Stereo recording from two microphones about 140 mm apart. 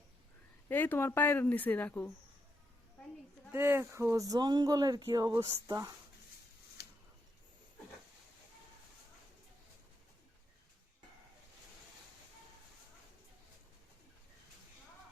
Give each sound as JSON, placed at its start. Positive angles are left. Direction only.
{"t": 0.7, "sound": "a woman's voice", "side_deg": 15}
{"t": 3.5, "sound": "speech", "side_deg": -15}